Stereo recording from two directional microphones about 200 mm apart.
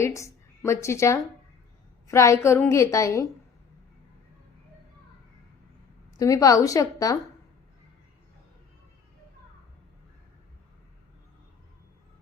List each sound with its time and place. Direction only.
0.0 s a woman's voice: 15° left (ahead or behind)
6.1 s a woman's voice: 15° left (ahead or behind)